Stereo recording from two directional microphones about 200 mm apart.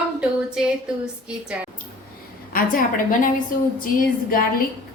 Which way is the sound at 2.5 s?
45° left (ahead or behind).